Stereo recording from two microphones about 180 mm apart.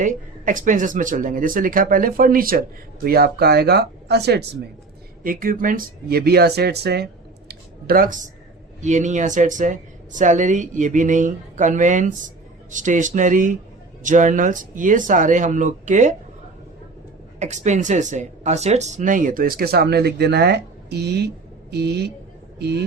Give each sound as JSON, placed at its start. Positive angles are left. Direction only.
{"t": 0.0, "sound": "speech", "side_deg": -45}
{"t": 5.2, "sound": "speech", "side_deg": -50}
{"t": 17.4, "sound": "speech", "side_deg": -40}